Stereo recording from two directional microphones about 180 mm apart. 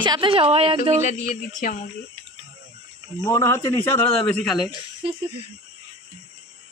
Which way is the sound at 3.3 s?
15° left (ahead or behind).